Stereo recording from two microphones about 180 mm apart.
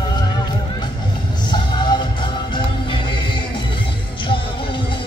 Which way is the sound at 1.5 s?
25° left (ahead or behind).